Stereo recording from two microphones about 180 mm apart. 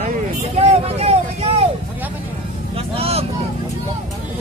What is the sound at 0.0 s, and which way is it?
Vehicle, 40° right (ahead or behind).